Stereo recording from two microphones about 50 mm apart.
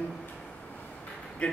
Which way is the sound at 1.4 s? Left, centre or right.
Left.